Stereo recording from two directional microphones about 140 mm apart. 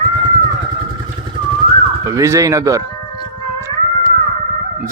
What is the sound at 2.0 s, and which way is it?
Speech, 20° right (ahead or behind).